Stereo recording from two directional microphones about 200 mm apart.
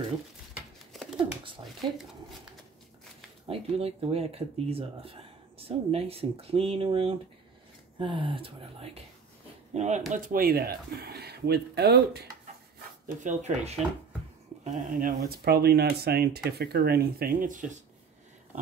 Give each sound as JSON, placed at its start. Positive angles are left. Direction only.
{"t": 0.6, "sound": "a sound", "side_deg": -5}
{"t": 1.4, "sound": "speech", "side_deg": -25}
{"t": 3.4, "sound": "speech", "side_deg": -30}
{"t": 13.2, "sound": "speech", "side_deg": -35}